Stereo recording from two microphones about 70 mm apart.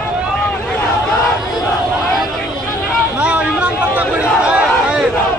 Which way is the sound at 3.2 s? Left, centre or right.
Centre.